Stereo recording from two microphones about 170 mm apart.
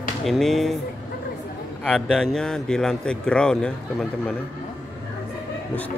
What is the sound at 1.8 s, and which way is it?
A man's voice, 5° left (ahead or behind).